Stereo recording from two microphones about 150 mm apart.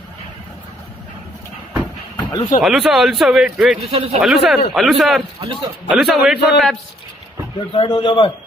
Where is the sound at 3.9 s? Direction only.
40° right (ahead or behind).